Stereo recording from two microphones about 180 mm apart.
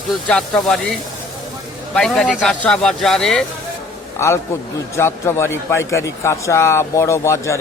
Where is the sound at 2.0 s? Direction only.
5° left (ahead or behind).